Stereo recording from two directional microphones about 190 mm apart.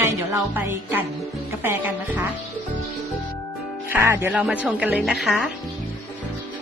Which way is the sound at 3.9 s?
10° right (ahead or behind).